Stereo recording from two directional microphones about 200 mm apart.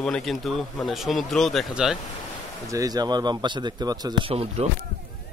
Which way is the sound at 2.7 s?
20° right (ahead or behind).